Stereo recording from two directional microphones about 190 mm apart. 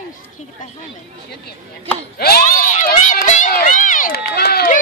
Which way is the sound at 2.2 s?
55° left (ahead or behind).